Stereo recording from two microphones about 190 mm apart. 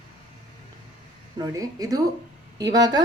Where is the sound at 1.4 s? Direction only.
20° right (ahead or behind).